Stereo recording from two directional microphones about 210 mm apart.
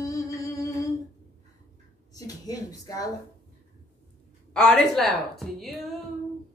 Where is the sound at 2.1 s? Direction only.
15° left (ahead or behind).